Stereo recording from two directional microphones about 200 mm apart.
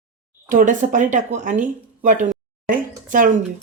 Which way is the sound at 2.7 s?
40° right (ahead or behind).